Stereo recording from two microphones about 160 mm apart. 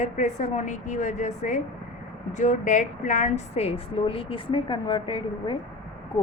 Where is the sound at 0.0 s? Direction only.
45° left (ahead or behind); by 5.5 s 30° left (ahead or behind).